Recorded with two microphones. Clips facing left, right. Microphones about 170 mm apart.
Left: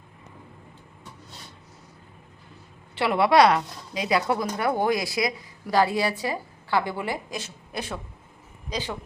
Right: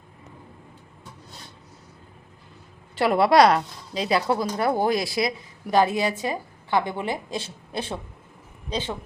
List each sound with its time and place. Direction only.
2.9 s a woman's voice: 45° right (ahead or behind)
4.1 s a woman's voice: 30° right (ahead or behind)